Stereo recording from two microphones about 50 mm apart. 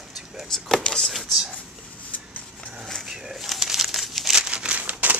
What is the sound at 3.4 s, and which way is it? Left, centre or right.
Crumpling, centre.